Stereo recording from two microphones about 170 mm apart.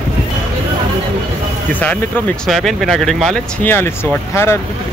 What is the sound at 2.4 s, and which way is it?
Speech, centre (ahead or behind).